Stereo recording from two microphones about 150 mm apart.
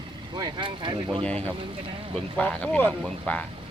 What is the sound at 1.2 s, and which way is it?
Speech, 10° left (ahead or behind).